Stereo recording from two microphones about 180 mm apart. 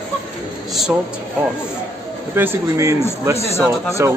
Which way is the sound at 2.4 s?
15° right (ahead or behind).